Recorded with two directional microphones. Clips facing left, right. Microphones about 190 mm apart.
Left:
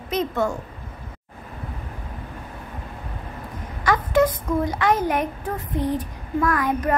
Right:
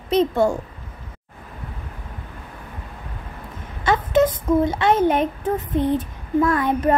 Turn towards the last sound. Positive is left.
turn(degrees=-25)  # may be behind; listen again after turning